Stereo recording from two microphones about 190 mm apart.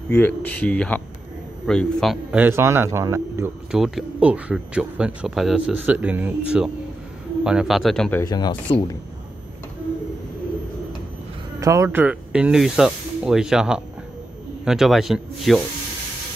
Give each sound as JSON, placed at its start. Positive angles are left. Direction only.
{"t": 0.1, "sound": "speech", "side_deg": 10}
{"t": 2.3, "sound": "a man's voice", "side_deg": -10}
{"t": 3.7, "sound": "speech", "side_deg": 0}
{"t": 8.2, "sound": "speech", "side_deg": 20}
{"t": 11.6, "sound": "speech", "side_deg": -15}